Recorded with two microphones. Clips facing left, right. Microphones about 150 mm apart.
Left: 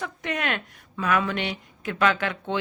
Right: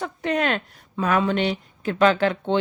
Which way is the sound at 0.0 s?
35° right (ahead or behind).